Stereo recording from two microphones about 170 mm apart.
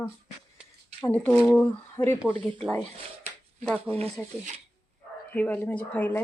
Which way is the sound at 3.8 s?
35° right (ahead or behind).